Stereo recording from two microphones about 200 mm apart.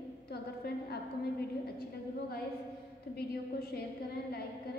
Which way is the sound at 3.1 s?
50° left (ahead or behind).